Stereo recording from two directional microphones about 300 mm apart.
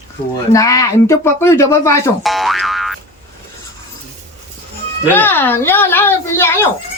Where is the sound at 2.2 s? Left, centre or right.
Centre.